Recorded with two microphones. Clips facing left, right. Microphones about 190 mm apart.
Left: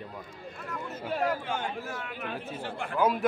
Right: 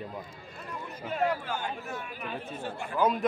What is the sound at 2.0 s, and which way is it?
Speech, 80° left.